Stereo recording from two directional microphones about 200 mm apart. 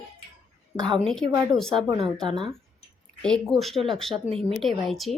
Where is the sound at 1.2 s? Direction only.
15° right (ahead or behind).